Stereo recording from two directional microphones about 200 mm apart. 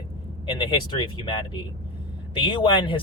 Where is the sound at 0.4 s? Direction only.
25° left (ahead or behind).